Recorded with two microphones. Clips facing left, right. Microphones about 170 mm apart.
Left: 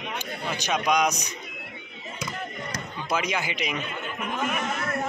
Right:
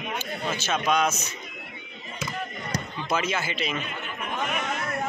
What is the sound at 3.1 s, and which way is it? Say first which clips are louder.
Speech: even; 15° left (ahead or behind).